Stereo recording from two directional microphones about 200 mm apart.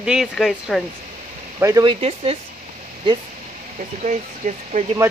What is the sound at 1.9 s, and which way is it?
Speech, 30° right (ahead or behind).